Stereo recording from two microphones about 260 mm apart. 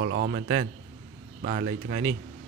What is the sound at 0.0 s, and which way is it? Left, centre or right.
Speech, right.